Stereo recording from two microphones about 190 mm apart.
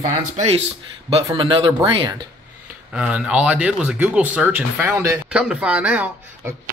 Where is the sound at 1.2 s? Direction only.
25° right (ahead or behind).